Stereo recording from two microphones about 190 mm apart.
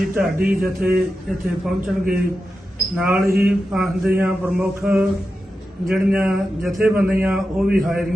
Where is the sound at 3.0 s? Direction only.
10° right (ahead or behind).